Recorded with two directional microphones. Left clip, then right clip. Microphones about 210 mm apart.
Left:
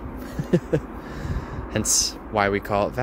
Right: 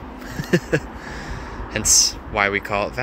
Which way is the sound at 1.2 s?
25° left (ahead or behind).